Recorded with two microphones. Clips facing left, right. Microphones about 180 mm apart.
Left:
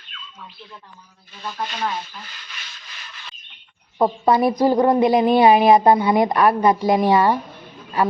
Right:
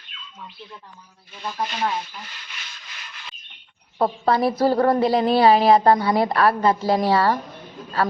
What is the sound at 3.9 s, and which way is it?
A woman's voice, 15° left (ahead or behind).